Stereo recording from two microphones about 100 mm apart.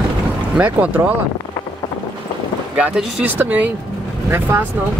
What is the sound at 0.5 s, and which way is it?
Speech, 15° right (ahead or behind).